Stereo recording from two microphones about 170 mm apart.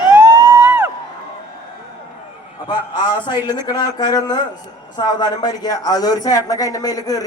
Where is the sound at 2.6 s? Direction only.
25° left (ahead or behind).